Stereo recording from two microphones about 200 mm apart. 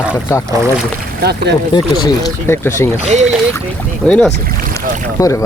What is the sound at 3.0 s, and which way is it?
Speech, 35° right (ahead or behind).